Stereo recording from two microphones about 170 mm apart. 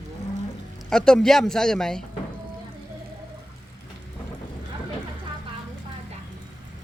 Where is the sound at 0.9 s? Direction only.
5° left (ahead or behind).